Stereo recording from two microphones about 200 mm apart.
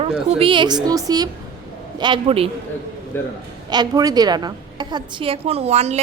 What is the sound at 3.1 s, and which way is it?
Speech, 10° left (ahead or behind).